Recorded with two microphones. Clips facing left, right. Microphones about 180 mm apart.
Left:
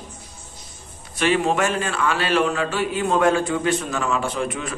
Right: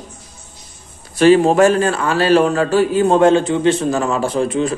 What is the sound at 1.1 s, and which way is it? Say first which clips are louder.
A man's voice: right 10 dB; 35° right (ahead or behind).